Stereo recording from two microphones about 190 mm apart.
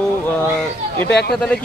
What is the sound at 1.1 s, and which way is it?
Speech, 60° left (ahead or behind).